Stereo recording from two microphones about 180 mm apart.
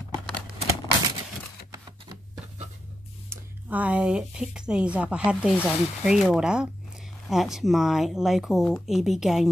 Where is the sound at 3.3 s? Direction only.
10° right (ahead or behind).